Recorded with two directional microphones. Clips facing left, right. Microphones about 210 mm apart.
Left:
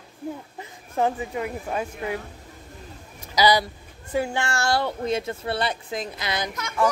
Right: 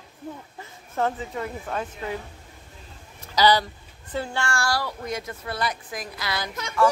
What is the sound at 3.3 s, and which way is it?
A child's voice, 10° left (ahead or behind).